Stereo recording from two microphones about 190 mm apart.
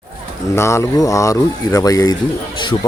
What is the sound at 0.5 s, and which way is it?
A man's voice, 15° left (ahead or behind).